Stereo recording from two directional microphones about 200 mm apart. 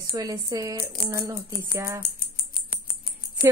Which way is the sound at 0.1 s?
15° right (ahead or behind).